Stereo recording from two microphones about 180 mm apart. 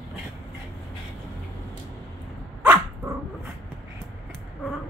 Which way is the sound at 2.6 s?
10° right (ahead or behind).